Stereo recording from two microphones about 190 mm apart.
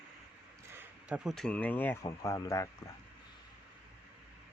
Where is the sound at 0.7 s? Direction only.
5° right (ahead or behind); by 2.7 s 15° left (ahead or behind).